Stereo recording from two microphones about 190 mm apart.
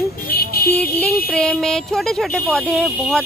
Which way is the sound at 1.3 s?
5° left (ahead or behind).